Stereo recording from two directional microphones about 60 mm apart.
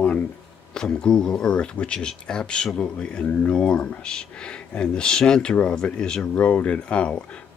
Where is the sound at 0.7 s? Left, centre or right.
Centre.